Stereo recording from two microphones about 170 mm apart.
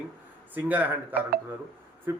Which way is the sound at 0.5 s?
10° right (ahead or behind).